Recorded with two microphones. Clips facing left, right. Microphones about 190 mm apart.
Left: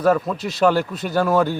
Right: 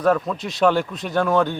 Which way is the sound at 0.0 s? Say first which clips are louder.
Left 1 dB; 5° left (ahead or behind).